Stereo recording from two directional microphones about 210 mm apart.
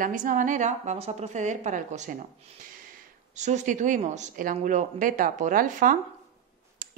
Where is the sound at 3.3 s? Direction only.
35° right (ahead or behind).